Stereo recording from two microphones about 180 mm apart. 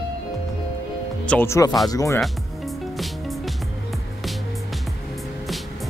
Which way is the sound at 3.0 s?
Centre (ahead or behind).